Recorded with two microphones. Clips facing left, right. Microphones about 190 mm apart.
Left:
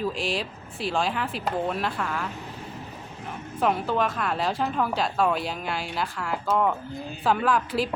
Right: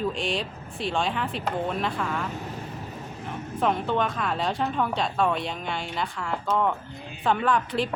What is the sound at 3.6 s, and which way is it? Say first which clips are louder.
A woman's voice: left 1 dB; 5° left (ahead or behind).